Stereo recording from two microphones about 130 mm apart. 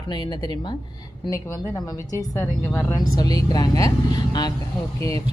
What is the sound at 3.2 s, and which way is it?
Speech, 30° left (ahead or behind).